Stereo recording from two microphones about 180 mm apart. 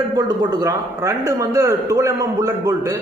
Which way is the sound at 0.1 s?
20° right (ahead or behind).